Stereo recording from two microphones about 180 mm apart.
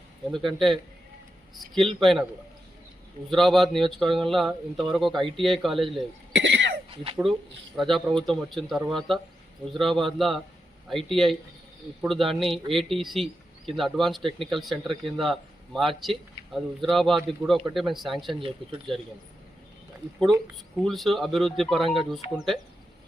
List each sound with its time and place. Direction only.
0.3 s a man's voice: centre (ahead or behind)
3.2 s a man's voice: centre (ahead or behind)
6.3 s cough: 80° right
6.9 s speech: 30° right (ahead or behind)
7.8 s a man's voice: centre (ahead or behind)
18.3 s speech: 30° right (ahead or behind)
20.7 s a man's voice: centre (ahead or behind)